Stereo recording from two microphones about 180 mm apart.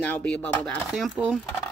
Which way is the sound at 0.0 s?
5° left (ahead or behind).